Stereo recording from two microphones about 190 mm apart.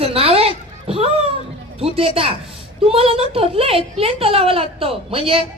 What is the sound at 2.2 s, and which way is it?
A child's voice, 30° right (ahead or behind).